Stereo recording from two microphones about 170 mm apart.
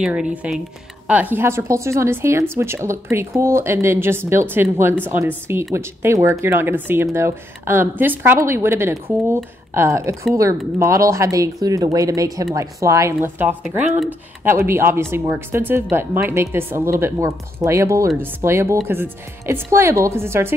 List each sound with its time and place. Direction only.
0.0 s speech: 5° right (ahead or behind)